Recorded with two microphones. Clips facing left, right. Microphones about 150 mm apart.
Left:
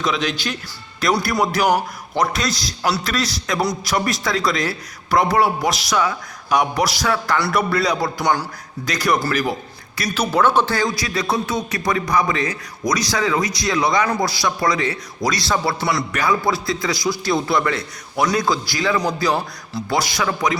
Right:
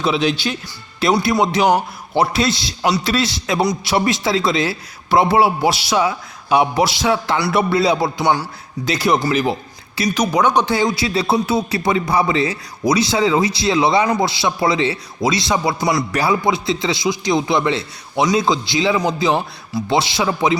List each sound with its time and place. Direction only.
0.0 s a man's voice: 30° right (ahead or behind)
2.1 s speech: 30° right (ahead or behind)
8.2 s a man's voice: 10° right (ahead or behind)
8.8 s speech: 25° right (ahead or behind)
10.1 s speech: 15° right (ahead or behind)